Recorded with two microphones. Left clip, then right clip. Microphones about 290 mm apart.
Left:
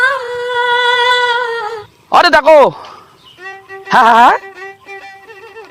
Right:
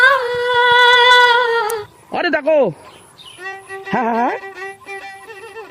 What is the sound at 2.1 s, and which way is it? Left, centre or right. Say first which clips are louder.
Speech: left 10 dB; left.